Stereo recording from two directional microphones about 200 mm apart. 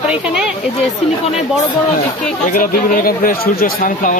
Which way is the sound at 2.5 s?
45° left (ahead or behind).